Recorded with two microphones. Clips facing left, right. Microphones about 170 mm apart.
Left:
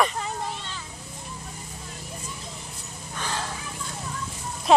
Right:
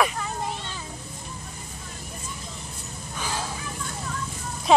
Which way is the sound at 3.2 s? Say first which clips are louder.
Even; 5° right (ahead or behind).